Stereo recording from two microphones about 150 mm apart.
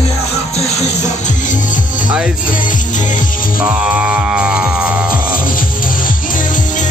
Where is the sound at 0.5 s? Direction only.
45° left (ahead or behind).